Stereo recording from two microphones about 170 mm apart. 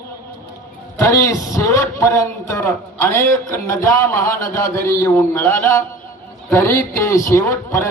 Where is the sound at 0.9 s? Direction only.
20° left (ahead or behind).